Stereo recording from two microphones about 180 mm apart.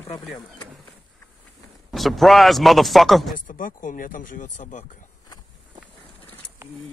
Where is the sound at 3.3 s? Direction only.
45° left (ahead or behind).